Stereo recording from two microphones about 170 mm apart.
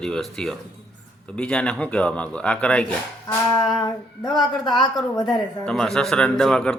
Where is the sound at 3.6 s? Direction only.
25° left (ahead or behind).